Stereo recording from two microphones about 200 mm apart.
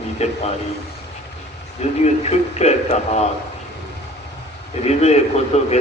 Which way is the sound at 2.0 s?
35° left (ahead or behind).